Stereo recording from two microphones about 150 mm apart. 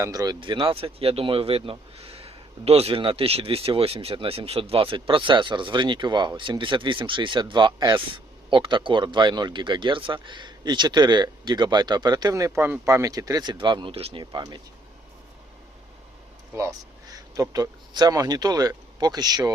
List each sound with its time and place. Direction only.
0.0 s speech: 25° right (ahead or behind)
0.3 s speech: 35° right (ahead or behind)
16.6 s speech: 25° right (ahead or behind)